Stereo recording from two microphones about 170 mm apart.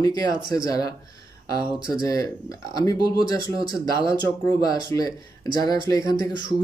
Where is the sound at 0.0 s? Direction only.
20° left (ahead or behind).